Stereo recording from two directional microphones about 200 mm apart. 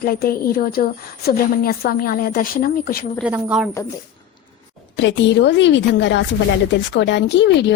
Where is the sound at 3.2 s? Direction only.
5° right (ahead or behind).